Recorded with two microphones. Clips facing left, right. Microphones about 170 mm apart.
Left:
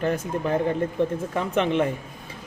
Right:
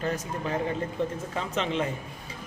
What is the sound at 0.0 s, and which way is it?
Speech, 55° left (ahead or behind).